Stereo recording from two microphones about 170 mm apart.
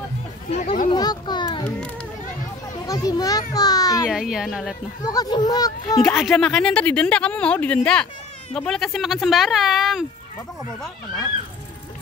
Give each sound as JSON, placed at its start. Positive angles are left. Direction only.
{"t": 0.5, "sound": "speech", "side_deg": 40}
{"t": 0.8, "sound": "a child's voice", "side_deg": 25}
{"t": 2.9, "sound": "a child's voice", "side_deg": 20}
{"t": 4.1, "sound": "speech", "side_deg": -5}
{"t": 5.1, "sound": "a child's voice", "side_deg": 20}
{"t": 6.0, "sound": "speech", "side_deg": 0}